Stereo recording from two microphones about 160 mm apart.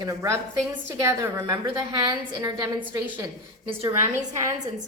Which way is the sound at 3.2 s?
30° right (ahead or behind).